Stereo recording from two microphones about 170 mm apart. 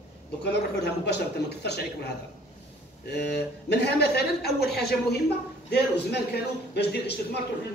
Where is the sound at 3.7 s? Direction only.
75° left (ahead or behind).